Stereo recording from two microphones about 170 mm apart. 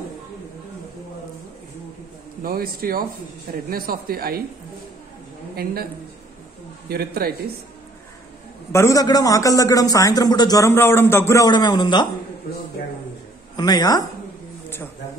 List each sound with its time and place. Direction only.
2.4 s speech: 60° right (ahead or behind)
6.9 s speech: 65° right (ahead or behind)
8.7 s a man's voice: 20° left (ahead or behind)
13.6 s a man's voice: 25° left (ahead or behind)